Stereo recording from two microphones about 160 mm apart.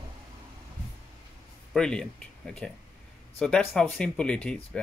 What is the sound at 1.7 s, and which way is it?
Speech, 5° left (ahead or behind).